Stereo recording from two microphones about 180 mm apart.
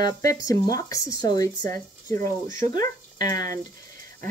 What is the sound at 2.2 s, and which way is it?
Speech, 50° right (ahead or behind).